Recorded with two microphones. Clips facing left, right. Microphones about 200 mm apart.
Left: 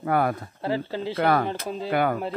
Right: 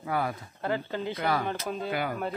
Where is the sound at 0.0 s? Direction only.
55° left (ahead or behind).